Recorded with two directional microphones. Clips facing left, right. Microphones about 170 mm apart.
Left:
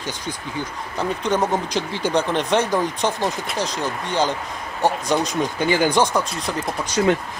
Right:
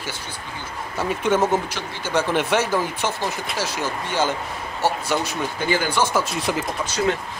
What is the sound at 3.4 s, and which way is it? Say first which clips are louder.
Speech: left 1 dB; 5° right (ahead or behind).